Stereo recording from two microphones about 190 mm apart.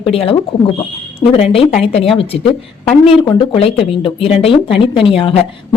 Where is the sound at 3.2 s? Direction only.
30° left (ahead or behind).